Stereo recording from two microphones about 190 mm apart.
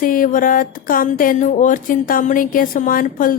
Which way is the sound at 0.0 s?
45° left (ahead or behind).